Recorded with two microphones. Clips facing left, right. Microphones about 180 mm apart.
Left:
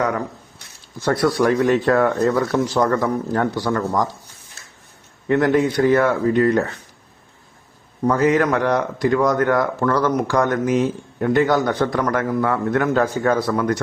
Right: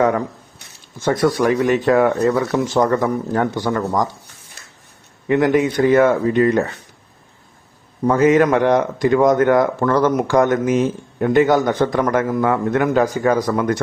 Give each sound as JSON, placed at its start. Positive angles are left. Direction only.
{"t": 0.9, "sound": "speech", "side_deg": -20}
{"t": 5.3, "sound": "speech", "side_deg": -15}
{"t": 8.0, "sound": "speech", "side_deg": -20}